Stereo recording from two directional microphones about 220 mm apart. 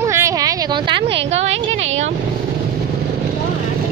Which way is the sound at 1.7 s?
60° right (ahead or behind).